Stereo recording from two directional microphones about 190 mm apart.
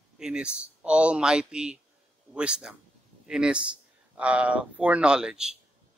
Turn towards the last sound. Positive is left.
turn(degrees=-5)  # may be behind; listen again after turning